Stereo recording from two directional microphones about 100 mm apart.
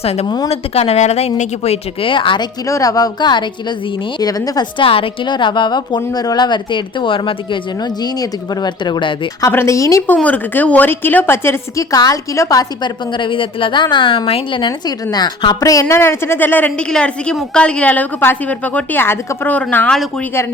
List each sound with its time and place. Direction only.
0.0 s speech: 90° left
1.6 s a woman's voice: 80° left; by 2.5 s 55° left (ahead or behind)
2.6 s a woman's voice: 35° left (ahead or behind); by 3.8 s 50° left (ahead or behind)
4.2 s a woman's voice: 40° left (ahead or behind)
4.8 s a woman's voice: 65° left (ahead or behind)
9.5 s a woman's voice: 25° left (ahead or behind)
10.2 s a woman's voice: 15° left (ahead or behind)
11.9 s a woman's voice: 40° left (ahead or behind)
13.1 s a woman's voice: 55° left (ahead or behind)
15.1 s a woman's voice: 45° left (ahead or behind); by 19.9 s 15° left (ahead or behind)
19.9 s a woman's voice: 5° left (ahead or behind)